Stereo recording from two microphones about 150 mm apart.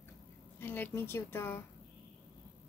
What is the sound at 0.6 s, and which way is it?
A woman's voice, 15° left (ahead or behind).